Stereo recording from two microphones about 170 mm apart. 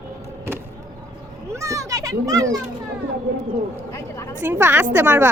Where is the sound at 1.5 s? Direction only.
15° right (ahead or behind).